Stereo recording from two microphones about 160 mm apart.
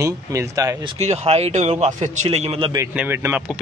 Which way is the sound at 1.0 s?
40° right (ahead or behind).